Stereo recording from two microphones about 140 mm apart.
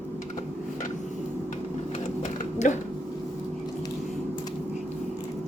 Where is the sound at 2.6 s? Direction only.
60° left (ahead or behind).